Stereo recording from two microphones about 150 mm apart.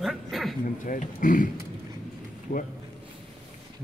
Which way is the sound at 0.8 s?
60° left (ahead or behind).